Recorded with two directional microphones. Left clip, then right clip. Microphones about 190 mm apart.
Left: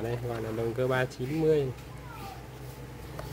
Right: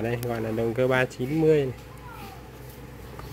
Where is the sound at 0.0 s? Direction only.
25° right (ahead or behind).